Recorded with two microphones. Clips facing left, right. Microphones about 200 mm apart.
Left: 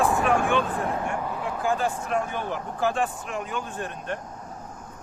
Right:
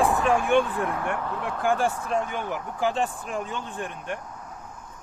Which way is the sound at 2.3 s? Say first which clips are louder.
Even; 15° right (ahead or behind).